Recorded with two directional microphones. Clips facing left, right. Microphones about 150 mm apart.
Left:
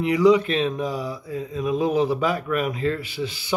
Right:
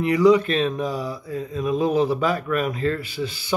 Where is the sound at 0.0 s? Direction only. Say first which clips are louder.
Right 1 dB; 20° left (ahead or behind).